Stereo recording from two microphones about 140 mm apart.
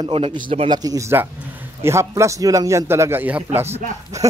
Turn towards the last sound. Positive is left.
turn(degrees=-25)  # may be behind; listen again after turning